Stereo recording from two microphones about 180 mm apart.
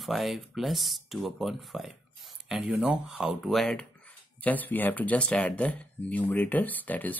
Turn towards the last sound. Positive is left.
turn(degrees=10)  # may be behind; listen again after turning